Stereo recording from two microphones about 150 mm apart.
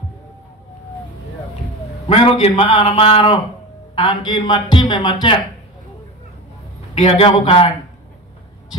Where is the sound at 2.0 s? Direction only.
40° left (ahead or behind).